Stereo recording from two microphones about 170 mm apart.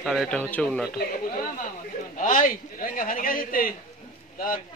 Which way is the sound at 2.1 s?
50° left (ahead or behind).